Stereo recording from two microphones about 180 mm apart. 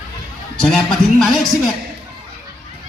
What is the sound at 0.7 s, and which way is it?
Music, centre (ahead or behind).